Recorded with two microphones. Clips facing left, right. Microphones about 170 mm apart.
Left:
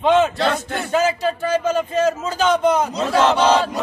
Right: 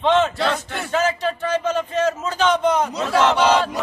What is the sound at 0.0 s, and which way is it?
Speech, 10° left (ahead or behind).